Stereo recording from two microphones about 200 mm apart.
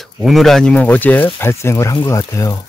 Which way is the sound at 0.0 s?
Centre (ahead or behind).